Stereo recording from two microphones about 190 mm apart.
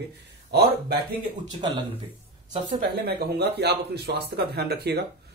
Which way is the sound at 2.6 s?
55° right (ahead or behind).